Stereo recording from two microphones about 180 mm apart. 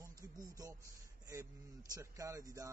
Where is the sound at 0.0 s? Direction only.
20° right (ahead or behind).